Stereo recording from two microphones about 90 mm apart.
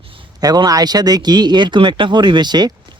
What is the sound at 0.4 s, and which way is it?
Speech, 45° right (ahead or behind).